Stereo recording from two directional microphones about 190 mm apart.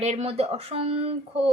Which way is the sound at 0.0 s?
35° right (ahead or behind).